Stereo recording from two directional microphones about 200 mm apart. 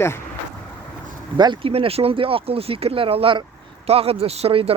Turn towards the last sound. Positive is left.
turn(degrees=-30)  # may be behind; listen again after turning